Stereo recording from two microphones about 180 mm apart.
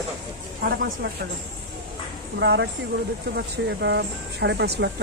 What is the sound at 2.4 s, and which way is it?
Speech, 75° right (ahead or behind).